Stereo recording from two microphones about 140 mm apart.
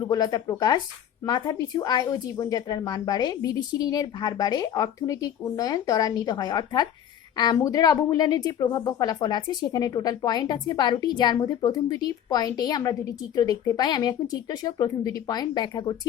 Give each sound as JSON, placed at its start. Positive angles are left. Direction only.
{"t": 0.1, "sound": "speech", "side_deg": 30}